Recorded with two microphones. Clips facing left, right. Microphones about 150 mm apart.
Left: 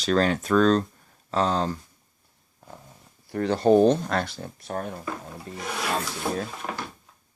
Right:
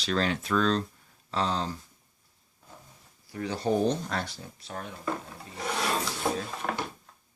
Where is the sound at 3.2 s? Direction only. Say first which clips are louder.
Left 9 dB; 65° left (ahead or behind); by 4.9 s 50° left (ahead or behind).